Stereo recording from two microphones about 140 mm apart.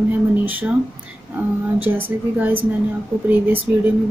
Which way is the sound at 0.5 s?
10° right (ahead or behind).